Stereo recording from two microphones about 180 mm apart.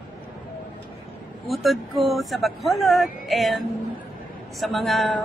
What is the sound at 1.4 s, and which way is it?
Speech, centre (ahead or behind).